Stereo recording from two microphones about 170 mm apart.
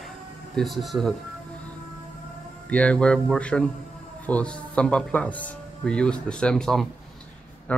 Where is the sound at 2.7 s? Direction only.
5° left (ahead or behind).